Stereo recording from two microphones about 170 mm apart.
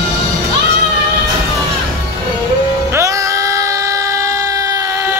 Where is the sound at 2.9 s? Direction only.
20° right (ahead or behind).